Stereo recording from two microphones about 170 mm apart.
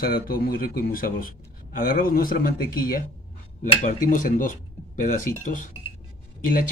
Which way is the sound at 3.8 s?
45° left (ahead or behind).